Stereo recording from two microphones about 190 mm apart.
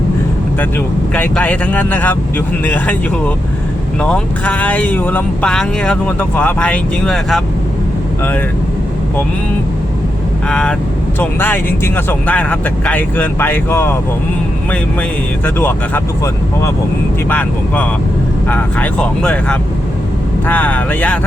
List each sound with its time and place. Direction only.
1.1 s speech: 10° left (ahead or behind)
10.5 s speech: 5° left (ahead or behind)
15.4 s speech: 10° left (ahead or behind)